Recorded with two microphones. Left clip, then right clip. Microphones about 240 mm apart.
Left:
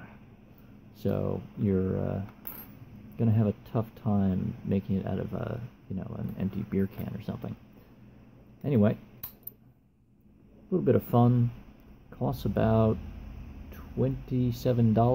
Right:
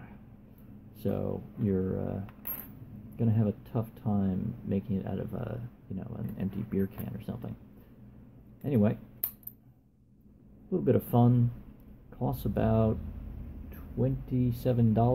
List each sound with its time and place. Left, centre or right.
1.0 s speech: left
3.2 s speech: left
8.6 s speech: left
10.7 s speech: left